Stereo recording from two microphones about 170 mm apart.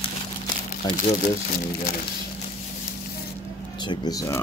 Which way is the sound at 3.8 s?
25° left (ahead or behind).